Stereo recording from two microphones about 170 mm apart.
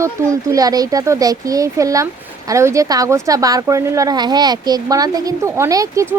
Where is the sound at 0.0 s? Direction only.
20° right (ahead or behind).